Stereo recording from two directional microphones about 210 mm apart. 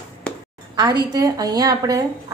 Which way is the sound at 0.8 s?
20° right (ahead or behind).